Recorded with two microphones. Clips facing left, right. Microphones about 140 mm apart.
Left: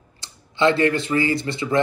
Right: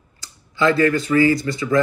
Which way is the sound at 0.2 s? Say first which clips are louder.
Even; 25° left (ahead or behind).